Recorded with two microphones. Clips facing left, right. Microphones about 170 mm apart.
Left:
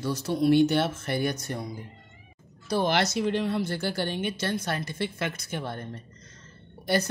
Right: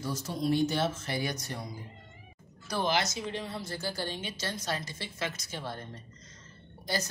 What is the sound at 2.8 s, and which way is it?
A woman's voice, 65° left (ahead or behind).